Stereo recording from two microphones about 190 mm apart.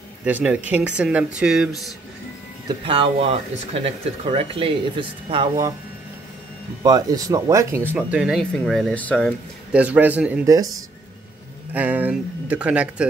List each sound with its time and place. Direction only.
0.2 s speech: 5° right (ahead or behind)
2.8 s speech: 30° right (ahead or behind)
6.8 s speech: 20° right (ahead or behind); by 9.3 s 5° left (ahead or behind)
9.7 s speech: 5° right (ahead or behind)
11.7 s speech: 10° right (ahead or behind)